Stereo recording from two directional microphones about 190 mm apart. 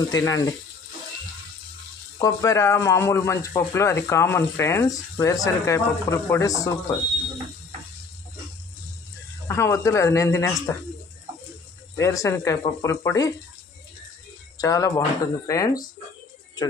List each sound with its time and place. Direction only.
0.1 s speech: 20° left (ahead or behind)
2.1 s speech: 15° left (ahead or behind)
9.5 s speech: 15° left (ahead or behind)
12.0 s speech: 15° left (ahead or behind)
14.6 s speech: 15° left (ahead or behind)